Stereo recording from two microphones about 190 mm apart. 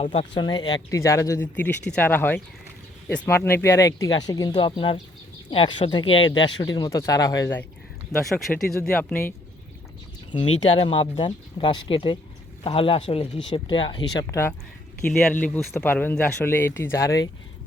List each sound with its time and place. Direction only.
0.0 s speech: 30° left (ahead or behind)
8.2 s speech: centre (ahead or behind)
10.3 s speech: 25° left (ahead or behind)